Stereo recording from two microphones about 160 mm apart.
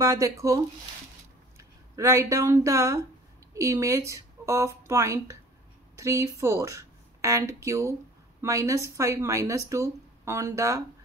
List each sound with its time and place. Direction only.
0.0 s speech: 20° right (ahead or behind)
1.6 s speech: 20° right (ahead or behind)